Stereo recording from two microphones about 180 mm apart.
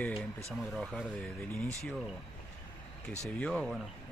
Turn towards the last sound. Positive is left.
turn(degrees=0)  # may be behind; listen again after turning